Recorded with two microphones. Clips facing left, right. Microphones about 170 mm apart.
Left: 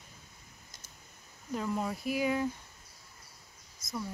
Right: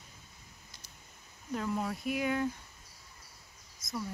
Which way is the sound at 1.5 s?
Centre (ahead or behind).